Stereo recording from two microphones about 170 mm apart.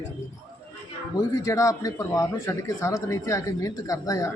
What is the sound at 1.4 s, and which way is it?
Speech, 20° left (ahead or behind).